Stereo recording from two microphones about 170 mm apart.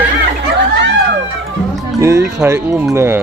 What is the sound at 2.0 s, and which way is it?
Speech, 15° right (ahead or behind).